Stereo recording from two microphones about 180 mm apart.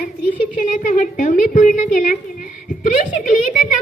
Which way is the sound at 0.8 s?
45° left (ahead or behind).